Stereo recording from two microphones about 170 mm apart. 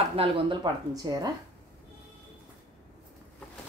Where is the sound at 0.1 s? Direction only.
35° right (ahead or behind).